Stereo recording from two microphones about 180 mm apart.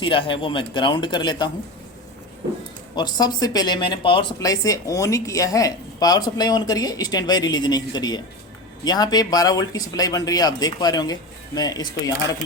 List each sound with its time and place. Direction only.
0.0 s a woman's voice: 30° left (ahead or behind)
2.9 s a woman's voice: 25° left (ahead or behind)